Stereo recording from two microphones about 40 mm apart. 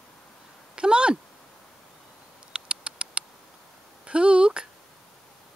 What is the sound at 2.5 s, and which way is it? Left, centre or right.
Mouse, right.